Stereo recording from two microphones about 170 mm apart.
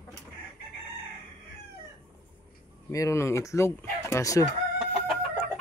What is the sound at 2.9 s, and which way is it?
Speech, 15° left (ahead or behind).